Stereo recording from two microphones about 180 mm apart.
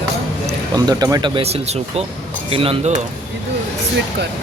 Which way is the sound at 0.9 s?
20° right (ahead or behind).